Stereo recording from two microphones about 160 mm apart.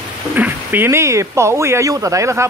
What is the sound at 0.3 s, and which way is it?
Speech, 10° right (ahead or behind).